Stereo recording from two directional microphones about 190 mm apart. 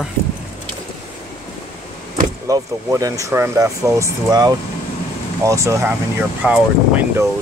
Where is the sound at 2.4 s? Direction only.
15° right (ahead or behind).